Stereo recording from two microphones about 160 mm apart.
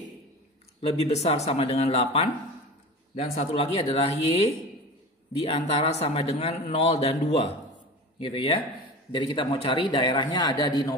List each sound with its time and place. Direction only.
0.7 s a man's voice: 40° left (ahead or behind)
3.3 s a man's voice: 40° left (ahead or behind); by 11.0 s 25° left (ahead or behind)